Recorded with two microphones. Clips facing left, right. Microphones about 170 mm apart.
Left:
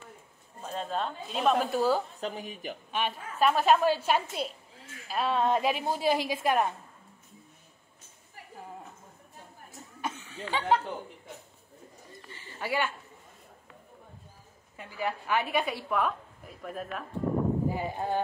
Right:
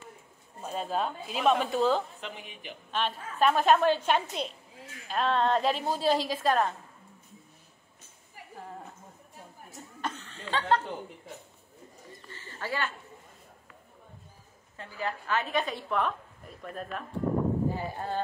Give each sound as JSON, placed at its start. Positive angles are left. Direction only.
{"t": 0.6, "sound": "speech", "side_deg": -10}
{"t": 2.1, "sound": "a woman's voice", "side_deg": 40}
{"t": 2.9, "sound": "a woman's voice", "side_deg": 10}
{"t": 10.0, "sound": "a sound", "side_deg": 10}
{"t": 12.3, "sound": "a sound", "side_deg": 15}
{"t": 14.8, "sound": "a woman's voice", "side_deg": 15}
{"t": 17.6, "sound": "a woman's voice", "side_deg": 15}